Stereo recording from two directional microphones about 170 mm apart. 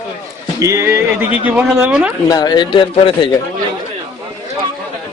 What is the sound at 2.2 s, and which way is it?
A man's voice, 20° left (ahead or behind).